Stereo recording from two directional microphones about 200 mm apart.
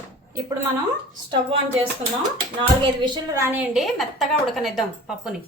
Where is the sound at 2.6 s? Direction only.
25° right (ahead or behind); by 5.3 s centre (ahead or behind).